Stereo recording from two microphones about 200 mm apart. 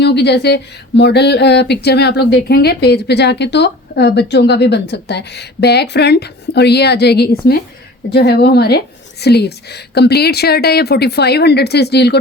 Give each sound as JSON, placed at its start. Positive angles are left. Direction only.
{"t": 0.0, "sound": "speech", "side_deg": 55}